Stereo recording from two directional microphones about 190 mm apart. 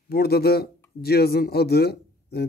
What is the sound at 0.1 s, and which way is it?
Speech, 55° left (ahead or behind).